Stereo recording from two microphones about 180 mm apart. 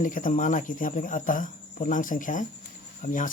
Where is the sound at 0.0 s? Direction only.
50° left (ahead or behind).